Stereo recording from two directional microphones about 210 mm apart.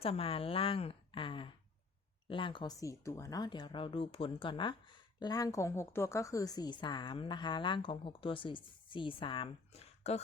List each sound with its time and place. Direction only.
0.0 s speech: 25° left (ahead or behind)